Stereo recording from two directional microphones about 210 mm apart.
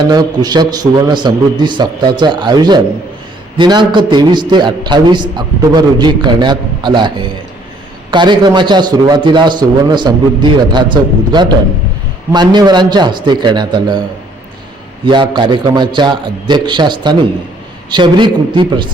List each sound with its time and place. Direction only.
0.1 s a man's voice: 20° right (ahead or behind)
15.0 s a man's voice: 20° right (ahead or behind)